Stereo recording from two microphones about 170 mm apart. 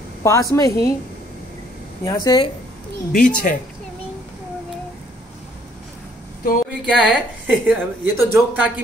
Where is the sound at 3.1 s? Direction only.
50° left (ahead or behind).